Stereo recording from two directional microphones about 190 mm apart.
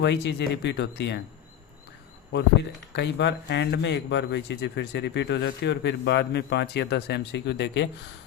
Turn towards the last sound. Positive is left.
turn(degrees=65)  # may be behind; listen again after turning